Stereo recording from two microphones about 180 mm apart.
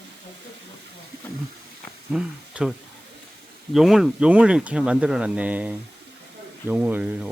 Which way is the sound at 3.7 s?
Centre (ahead or behind).